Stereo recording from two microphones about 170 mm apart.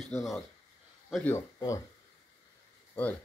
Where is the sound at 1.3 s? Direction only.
15° left (ahead or behind).